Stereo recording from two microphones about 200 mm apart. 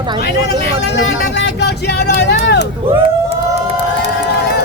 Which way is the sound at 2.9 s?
30° right (ahead or behind).